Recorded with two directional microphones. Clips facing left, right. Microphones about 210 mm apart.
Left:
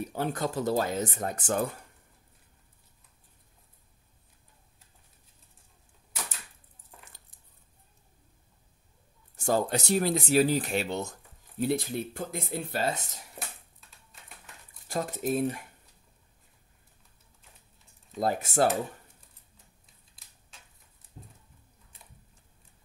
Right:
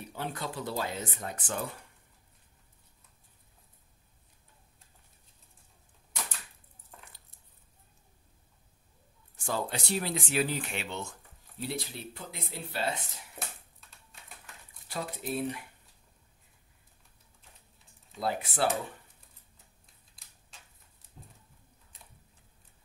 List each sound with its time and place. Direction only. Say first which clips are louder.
0.1 s speech: left 5 dB; 45° left (ahead or behind)
9.4 s speech: left 7 dB; 45° left (ahead or behind)
14.9 s speech: left 6 dB; 45° left (ahead or behind)
18.2 s speech: left 5 dB; 45° left (ahead or behind)
20.2 s a sound: right 1 dB; centre (ahead or behind)